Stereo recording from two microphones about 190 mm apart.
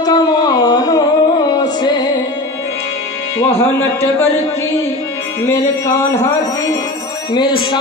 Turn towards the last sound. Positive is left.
turn(degrees=25)  # may be behind; listen again after turning